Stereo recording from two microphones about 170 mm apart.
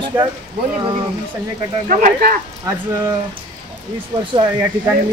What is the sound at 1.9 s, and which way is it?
Speech, 55° right (ahead or behind).